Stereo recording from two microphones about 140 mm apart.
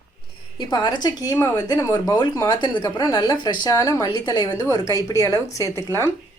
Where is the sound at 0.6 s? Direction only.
30° left (ahead or behind).